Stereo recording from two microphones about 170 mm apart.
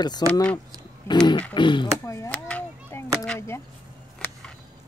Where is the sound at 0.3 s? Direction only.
5° left (ahead or behind).